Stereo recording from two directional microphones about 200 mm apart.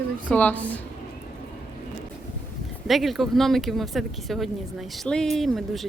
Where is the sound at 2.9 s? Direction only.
Centre (ahead or behind).